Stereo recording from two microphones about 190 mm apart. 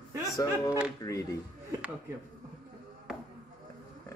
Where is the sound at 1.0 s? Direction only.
15° left (ahead or behind).